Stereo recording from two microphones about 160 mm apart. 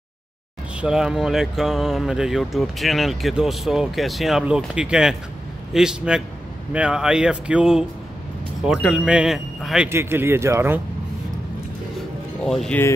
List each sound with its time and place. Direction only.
0.7 s speech: 5° right (ahead or behind)
9.8 s speech: 15° right (ahead or behind)
12.4 s speech: 5° left (ahead or behind)